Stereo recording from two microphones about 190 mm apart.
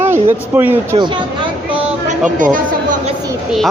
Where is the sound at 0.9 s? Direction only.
30° right (ahead or behind).